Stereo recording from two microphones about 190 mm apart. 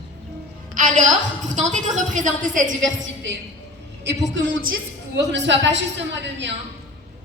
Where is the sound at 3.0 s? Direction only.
70° right (ahead or behind).